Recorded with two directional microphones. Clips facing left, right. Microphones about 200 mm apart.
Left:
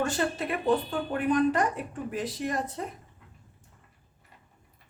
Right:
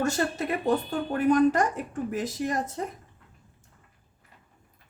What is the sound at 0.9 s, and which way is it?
Speech, 45° right (ahead or behind).